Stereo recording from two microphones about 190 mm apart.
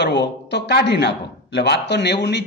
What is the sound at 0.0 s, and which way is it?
A man's voice, 65° left (ahead or behind).